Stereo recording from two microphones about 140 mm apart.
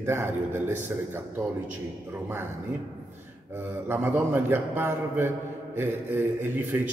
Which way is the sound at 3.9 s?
15° right (ahead or behind).